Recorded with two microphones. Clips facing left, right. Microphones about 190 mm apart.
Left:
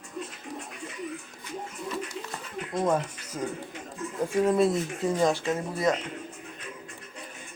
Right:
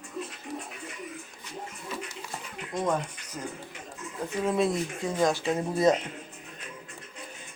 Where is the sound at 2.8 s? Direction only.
10° left (ahead or behind).